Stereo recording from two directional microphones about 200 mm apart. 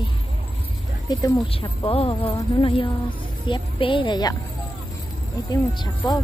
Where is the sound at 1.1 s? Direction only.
20° left (ahead or behind).